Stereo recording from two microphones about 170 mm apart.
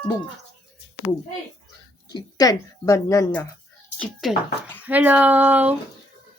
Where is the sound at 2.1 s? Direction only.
20° left (ahead or behind).